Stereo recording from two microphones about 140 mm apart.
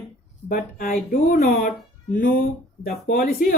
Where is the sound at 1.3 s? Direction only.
90° left.